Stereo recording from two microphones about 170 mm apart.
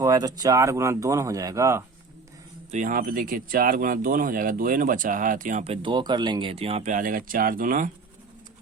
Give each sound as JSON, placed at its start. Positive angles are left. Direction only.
{"t": 0.0, "sound": "speech", "side_deg": -20}
{"t": 2.7, "sound": "speech", "side_deg": -55}